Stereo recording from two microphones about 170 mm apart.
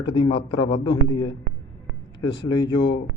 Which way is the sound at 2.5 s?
25° left (ahead or behind).